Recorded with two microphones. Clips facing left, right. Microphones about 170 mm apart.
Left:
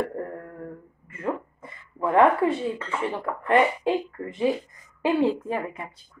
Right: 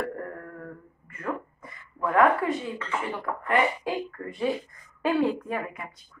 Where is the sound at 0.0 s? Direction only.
25° left (ahead or behind).